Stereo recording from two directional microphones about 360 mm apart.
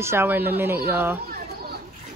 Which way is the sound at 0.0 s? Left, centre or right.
Centre.